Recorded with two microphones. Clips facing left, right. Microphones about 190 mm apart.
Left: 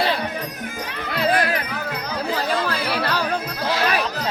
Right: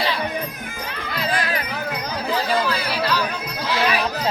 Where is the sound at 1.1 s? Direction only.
60° left (ahead or behind).